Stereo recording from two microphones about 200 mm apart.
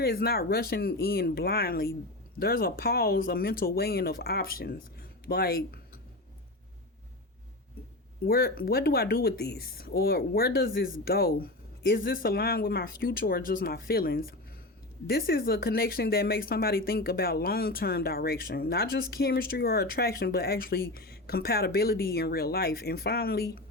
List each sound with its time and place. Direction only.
0.0 s speech: 50° left (ahead or behind)
8.2 s speech: 50° left (ahead or behind)